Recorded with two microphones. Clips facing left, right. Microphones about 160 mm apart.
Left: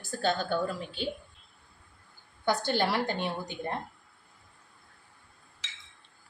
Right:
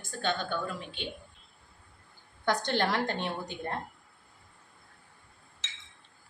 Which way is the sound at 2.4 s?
10° left (ahead or behind).